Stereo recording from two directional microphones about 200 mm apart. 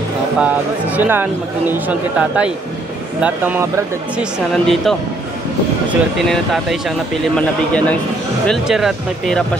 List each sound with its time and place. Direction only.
0.4 s speech: 10° right (ahead or behind)
4.5 s speech: centre (ahead or behind)
6.1 s a man's voice: centre (ahead or behind)